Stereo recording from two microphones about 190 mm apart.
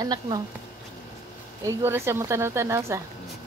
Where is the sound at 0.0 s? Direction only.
20° right (ahead or behind).